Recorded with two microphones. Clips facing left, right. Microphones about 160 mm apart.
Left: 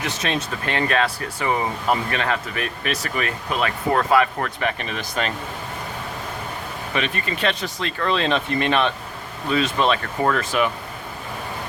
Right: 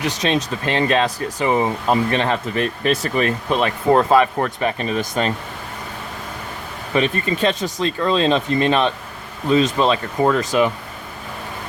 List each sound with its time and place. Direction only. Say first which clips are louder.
0.2 s speech: right 5 dB; 30° right (ahead or behind)
4.9 s speech: right 5 dB; 20° right (ahead or behind)
6.9 s speech: right 7 dB; 30° right (ahead or behind)
10.2 s speech: right 7 dB; 15° right (ahead or behind)